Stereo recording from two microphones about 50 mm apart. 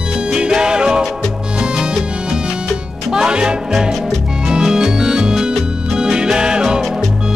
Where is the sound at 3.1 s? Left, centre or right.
Centre.